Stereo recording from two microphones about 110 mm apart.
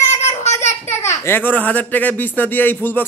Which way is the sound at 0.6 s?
90° left.